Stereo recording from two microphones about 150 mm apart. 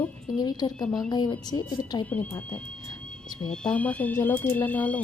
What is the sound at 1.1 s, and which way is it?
A woman's voice, 25° left (ahead or behind).